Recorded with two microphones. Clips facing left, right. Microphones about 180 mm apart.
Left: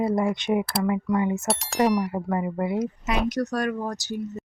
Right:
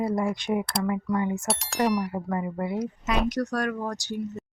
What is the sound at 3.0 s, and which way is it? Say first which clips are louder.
A woman's voice: left 1 dB; 5° left (ahead or behind).